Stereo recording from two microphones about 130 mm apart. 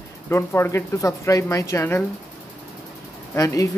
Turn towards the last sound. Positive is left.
turn(degrees=25)  # may be behind; listen again after turning